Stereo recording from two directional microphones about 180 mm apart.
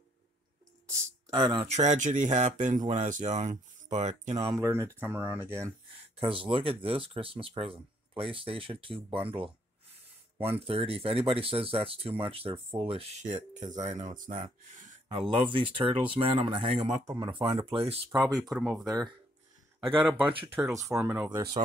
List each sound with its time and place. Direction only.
1.3 s speech: 25° right (ahead or behind)
1.7 s speech: 40° right (ahead or behind)
4.6 s speech: 15° right (ahead or behind)
6.1 s speech: 30° right (ahead or behind)
10.4 s speech: 30° right (ahead or behind)
15.0 s speech: 30° right (ahead or behind)
18.3 s speech: centre (ahead or behind)
20.0 s speech: 5° right (ahead or behind)
20.5 s speech: 15° right (ahead or behind)